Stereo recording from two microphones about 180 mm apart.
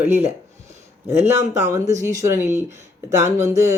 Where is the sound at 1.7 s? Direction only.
15° right (ahead or behind).